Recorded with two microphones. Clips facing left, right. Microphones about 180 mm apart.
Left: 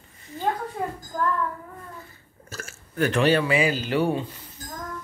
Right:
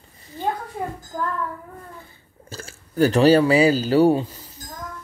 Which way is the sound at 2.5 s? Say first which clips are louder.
Right 5 dB; 30° right (ahead or behind).